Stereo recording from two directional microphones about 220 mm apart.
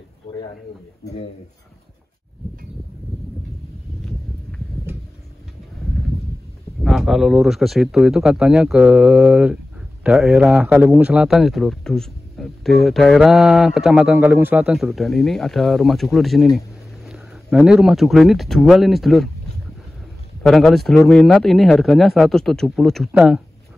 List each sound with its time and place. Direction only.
6.8 s a man's voice: centre (ahead or behind)
20.4 s a man's voice: centre (ahead or behind)